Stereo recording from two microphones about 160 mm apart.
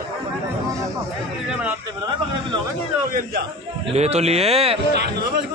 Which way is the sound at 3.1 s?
65° right (ahead or behind).